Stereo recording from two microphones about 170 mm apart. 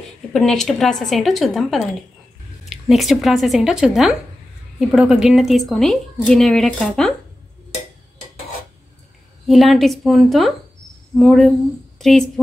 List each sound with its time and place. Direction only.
0.3 s speech: centre (ahead or behind)
9.5 s a woman's voice: centre (ahead or behind)